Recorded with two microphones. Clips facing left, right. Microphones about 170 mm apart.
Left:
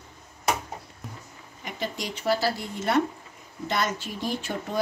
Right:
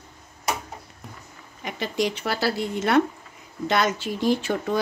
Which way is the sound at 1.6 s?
80° right.